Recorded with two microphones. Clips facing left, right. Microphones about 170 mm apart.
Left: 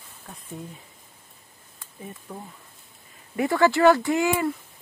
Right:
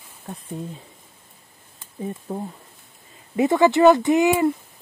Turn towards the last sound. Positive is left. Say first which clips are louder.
# right 5 dB
turn(degrees=-20)  # may be behind; listen again after turning